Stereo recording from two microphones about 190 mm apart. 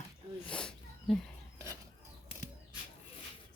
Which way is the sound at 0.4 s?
5° left (ahead or behind).